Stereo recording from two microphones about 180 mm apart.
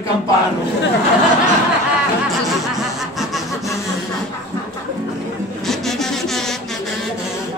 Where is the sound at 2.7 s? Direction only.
Centre (ahead or behind).